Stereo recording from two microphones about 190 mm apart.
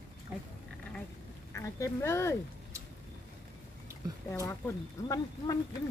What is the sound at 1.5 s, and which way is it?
Speech, 15° left (ahead or behind).